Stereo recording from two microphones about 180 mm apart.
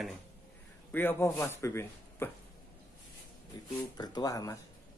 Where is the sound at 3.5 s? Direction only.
25° left (ahead or behind).